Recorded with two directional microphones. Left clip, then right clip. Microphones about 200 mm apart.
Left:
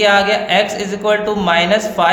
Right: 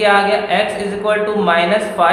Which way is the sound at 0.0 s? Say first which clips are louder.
Even; 45° left (ahead or behind).